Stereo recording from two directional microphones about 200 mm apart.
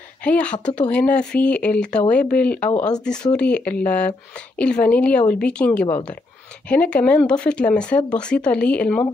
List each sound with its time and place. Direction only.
0.2 s a woman's voice: 5° left (ahead or behind)